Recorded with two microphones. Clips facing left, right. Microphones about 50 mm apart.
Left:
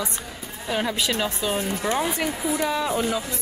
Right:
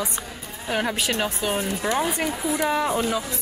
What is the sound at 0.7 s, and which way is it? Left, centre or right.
Speech, right.